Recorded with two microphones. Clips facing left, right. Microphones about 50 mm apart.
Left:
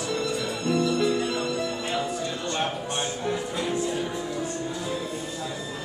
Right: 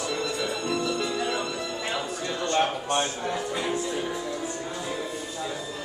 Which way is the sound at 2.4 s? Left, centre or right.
Right.